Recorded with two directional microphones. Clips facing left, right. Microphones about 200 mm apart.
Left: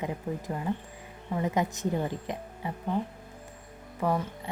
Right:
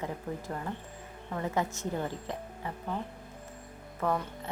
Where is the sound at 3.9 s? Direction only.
10° left (ahead or behind).